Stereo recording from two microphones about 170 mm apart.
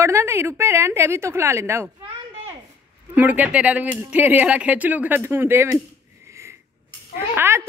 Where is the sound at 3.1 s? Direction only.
10° right (ahead or behind).